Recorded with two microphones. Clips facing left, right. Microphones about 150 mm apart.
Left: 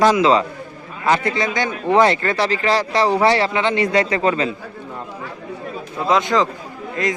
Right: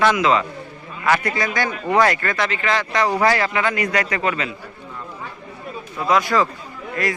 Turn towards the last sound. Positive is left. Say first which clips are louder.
# left 2 dB
turn(degrees=20)  # may be behind; listen again after turning